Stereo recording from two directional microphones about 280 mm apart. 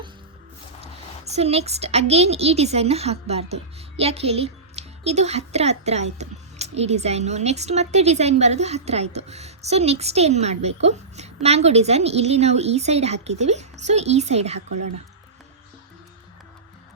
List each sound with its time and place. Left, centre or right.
1.2 s a woman's voice: right